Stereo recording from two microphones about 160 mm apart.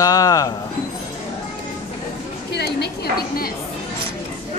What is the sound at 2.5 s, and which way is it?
A woman's voice, 90° left.